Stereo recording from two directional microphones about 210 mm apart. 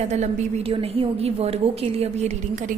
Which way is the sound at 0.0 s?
30° right (ahead or behind).